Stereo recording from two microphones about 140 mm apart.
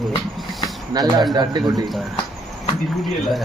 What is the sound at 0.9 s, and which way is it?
Speech, 30° right (ahead or behind).